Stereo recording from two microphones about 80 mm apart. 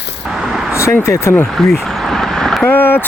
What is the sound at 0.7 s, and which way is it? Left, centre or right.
Speech, left.